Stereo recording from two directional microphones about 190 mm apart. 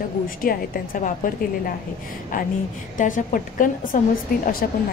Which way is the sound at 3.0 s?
45° left (ahead or behind).